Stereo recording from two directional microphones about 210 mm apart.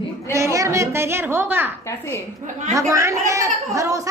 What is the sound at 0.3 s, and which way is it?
A woman's voice, 15° right (ahead or behind).